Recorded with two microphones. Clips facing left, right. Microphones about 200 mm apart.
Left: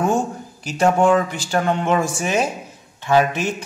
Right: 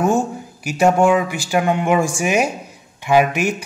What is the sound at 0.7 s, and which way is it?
A man's voice, 10° right (ahead or behind).